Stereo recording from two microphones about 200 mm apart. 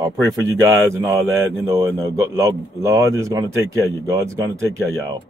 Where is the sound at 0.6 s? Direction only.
15° right (ahead or behind).